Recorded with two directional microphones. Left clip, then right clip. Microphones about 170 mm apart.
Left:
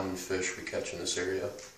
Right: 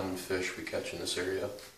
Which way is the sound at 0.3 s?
10° right (ahead or behind).